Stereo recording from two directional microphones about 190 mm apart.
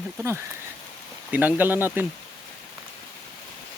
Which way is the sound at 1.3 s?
10° right (ahead or behind).